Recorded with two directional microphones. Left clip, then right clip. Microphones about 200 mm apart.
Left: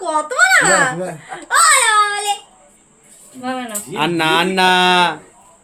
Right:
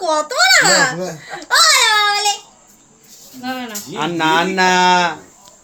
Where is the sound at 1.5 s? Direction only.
5° right (ahead or behind).